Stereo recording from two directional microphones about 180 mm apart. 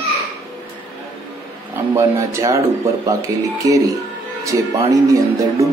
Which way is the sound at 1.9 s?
15° right (ahead or behind).